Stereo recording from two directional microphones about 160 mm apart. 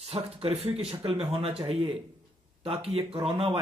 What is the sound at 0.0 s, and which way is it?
Speech, 40° right (ahead or behind).